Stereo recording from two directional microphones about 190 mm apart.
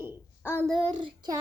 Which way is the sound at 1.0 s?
20° right (ahead or behind).